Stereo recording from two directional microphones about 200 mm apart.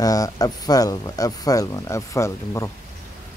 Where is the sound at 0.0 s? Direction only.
20° left (ahead or behind).